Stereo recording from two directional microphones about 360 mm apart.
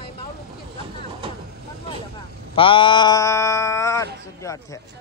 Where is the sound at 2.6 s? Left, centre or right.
Centre.